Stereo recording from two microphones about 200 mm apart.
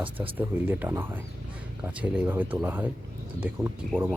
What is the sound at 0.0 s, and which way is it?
Speech, 10° right (ahead or behind).